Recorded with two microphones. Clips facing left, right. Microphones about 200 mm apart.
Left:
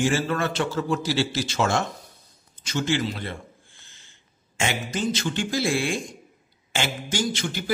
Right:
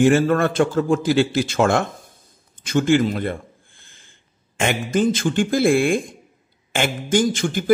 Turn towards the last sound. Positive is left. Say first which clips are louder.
# right 9 dB
turn(degrees=-50)  # may be behind; listen again after turning